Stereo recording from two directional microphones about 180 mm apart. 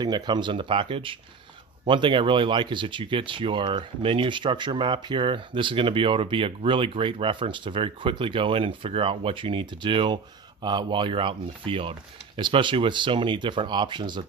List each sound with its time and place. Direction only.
0.0 s speech: 25° right (ahead or behind)